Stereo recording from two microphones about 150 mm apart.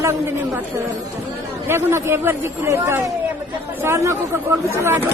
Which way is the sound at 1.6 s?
15° right (ahead or behind).